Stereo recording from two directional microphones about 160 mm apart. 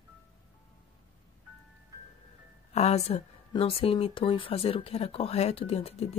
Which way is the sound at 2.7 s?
40° left (ahead or behind).